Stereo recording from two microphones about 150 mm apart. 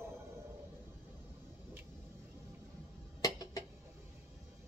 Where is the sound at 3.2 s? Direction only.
25° left (ahead or behind).